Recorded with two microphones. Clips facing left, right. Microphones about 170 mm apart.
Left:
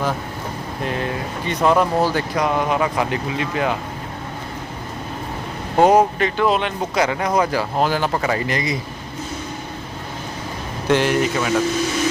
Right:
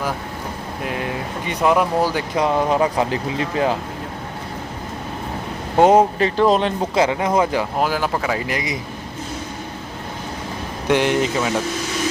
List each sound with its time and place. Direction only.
1.5 s speech: 10° right (ahead or behind)
2.3 s speech: 25° right (ahead or behind)
5.7 s speech: 25° right (ahead or behind)
7.8 s a man's voice: 5° right (ahead or behind)
10.8 s speech: 15° right (ahead or behind)